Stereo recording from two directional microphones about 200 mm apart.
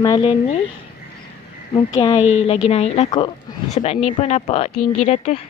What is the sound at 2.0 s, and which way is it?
Speech, 30° left (ahead or behind).